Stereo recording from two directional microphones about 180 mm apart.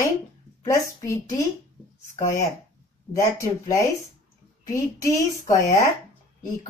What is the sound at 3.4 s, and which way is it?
A woman's voice, 15° left (ahead or behind).